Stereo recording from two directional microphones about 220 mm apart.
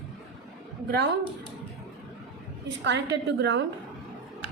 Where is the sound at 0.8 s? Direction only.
50° right (ahead or behind).